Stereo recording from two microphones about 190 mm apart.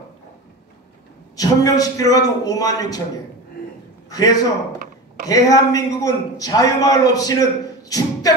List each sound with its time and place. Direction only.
1.3 s a man's voice: 20° left (ahead or behind)
4.1 s a man's voice: 20° left (ahead or behind)
7.9 s vocal music: 20° left (ahead or behind)